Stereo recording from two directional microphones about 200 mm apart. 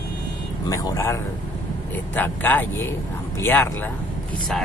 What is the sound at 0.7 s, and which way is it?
Speech, 15° left (ahead or behind).